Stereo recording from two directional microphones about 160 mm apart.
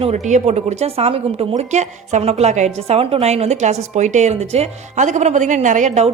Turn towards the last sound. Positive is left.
turn(degrees=-45)  # may be behind; listen again after turning